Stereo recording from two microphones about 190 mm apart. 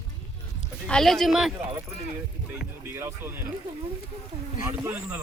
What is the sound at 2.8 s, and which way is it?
Speech, 10° right (ahead or behind).